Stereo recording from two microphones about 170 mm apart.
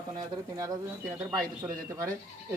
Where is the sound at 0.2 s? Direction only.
20° right (ahead or behind).